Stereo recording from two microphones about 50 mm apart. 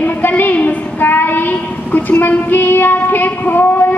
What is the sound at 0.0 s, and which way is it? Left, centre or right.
A woman's voice, left.